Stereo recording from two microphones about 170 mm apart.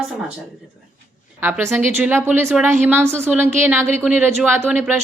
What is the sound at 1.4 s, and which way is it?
A woman's voice, 10° right (ahead or behind).